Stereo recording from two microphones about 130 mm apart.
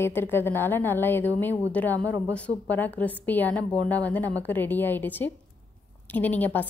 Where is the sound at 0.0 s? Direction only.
15° left (ahead or behind).